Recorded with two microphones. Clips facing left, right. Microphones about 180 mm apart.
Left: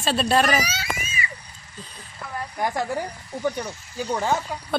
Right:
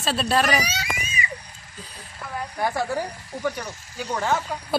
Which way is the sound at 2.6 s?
15° left (ahead or behind).